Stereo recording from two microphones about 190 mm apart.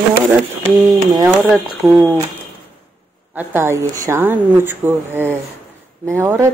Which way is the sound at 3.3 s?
10° right (ahead or behind).